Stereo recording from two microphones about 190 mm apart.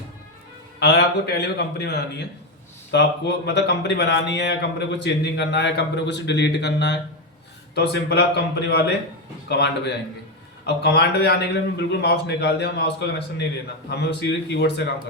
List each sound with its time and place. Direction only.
0.8 s a man's voice: 60° left (ahead or behind)